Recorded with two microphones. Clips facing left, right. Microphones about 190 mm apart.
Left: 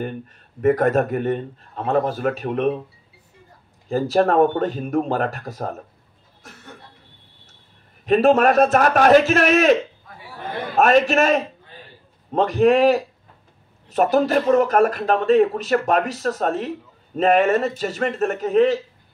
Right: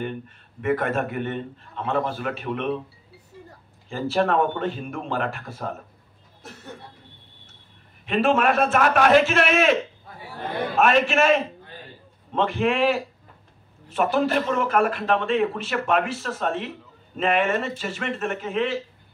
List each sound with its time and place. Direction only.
0.6 s a man's voice: 40° left (ahead or behind)
3.9 s a man's voice: 40° left (ahead or behind)
8.0 s a man's voice: 40° left (ahead or behind)
10.8 s a man's voice: 40° left (ahead or behind)